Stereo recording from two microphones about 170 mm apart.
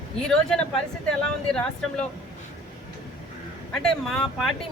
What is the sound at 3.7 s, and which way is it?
Speech, 5° left (ahead or behind).